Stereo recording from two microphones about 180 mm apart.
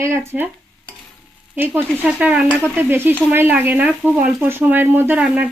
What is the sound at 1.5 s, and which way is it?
Speech, 10° right (ahead or behind).